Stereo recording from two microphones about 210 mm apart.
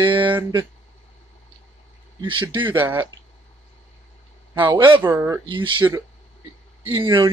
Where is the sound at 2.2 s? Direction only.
25° right (ahead or behind).